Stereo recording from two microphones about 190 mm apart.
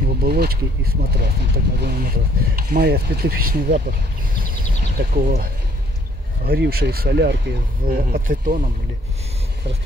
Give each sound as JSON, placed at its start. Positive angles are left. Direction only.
{"t": 0.2, "sound": "speech", "side_deg": -55}
{"t": 4.5, "sound": "a sound", "side_deg": -50}
{"t": 6.4, "sound": "speech", "side_deg": -55}